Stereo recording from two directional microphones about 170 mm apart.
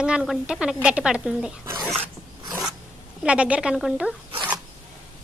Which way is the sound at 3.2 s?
5° right (ahead or behind).